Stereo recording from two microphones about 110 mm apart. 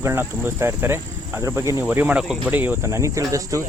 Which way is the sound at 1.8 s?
15° right (ahead or behind).